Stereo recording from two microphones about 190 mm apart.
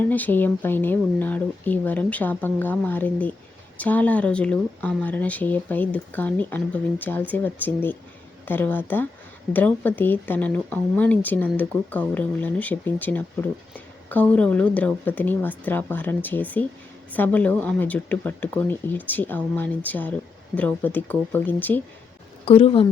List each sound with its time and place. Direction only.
0.1 s speech: 10° left (ahead or behind)
22.4 s a woman's voice: 30° left (ahead or behind)